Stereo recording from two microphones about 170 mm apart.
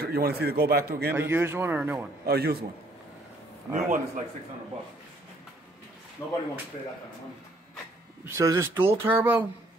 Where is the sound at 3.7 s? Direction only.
45° right (ahead or behind).